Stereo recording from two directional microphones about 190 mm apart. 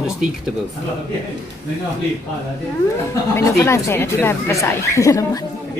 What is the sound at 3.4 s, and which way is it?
Speech, 15° left (ahead or behind).